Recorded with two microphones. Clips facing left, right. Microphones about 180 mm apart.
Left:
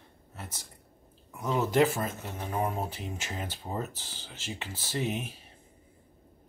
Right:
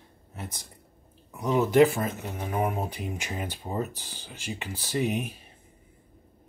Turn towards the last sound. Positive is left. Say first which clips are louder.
# right 4 dB
turn(degrees=-15)  # may be behind; listen again after turning